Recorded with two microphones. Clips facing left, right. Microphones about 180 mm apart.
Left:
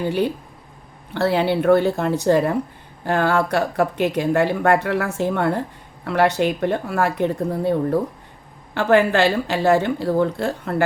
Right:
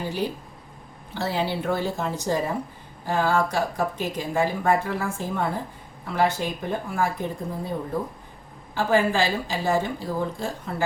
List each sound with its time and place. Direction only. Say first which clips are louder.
1.1 s a woman's voice: left 8 dB; 65° left (ahead or behind)